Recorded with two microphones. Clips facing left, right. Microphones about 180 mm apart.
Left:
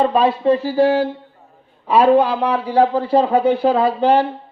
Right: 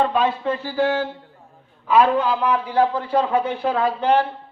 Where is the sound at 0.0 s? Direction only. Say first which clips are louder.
Left 5 dB; 35° left (ahead or behind).